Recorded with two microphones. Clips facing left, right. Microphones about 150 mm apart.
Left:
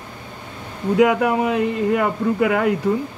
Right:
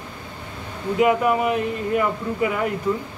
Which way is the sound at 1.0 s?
90° left.